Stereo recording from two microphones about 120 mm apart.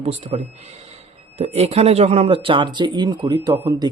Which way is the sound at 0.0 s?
55° right (ahead or behind).